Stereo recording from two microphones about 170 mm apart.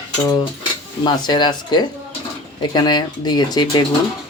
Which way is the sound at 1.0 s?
25° left (ahead or behind).